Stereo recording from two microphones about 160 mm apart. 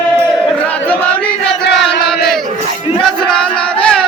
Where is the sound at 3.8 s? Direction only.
5° left (ahead or behind).